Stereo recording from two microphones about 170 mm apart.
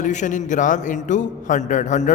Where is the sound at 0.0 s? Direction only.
45° left (ahead or behind).